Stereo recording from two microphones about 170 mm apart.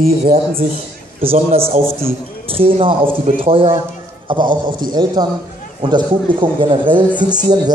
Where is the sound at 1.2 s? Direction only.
35° right (ahead or behind).